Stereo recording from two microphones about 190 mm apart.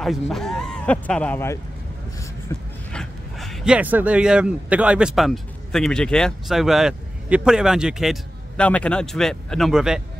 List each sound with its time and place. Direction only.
0.3 s speech: centre (ahead or behind)
2.9 s speech: centre (ahead or behind)